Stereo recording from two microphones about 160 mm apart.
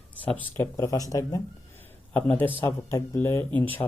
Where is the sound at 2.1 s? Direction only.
10° left (ahead or behind).